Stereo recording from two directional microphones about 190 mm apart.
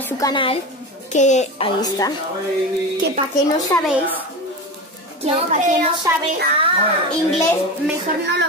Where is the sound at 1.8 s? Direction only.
20° left (ahead or behind).